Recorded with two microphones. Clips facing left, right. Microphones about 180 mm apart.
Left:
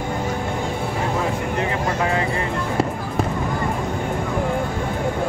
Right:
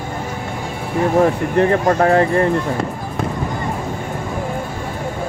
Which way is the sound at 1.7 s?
50° right (ahead or behind).